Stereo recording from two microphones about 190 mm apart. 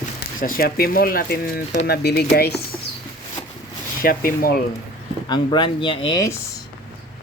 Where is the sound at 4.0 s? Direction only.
50° left (ahead or behind).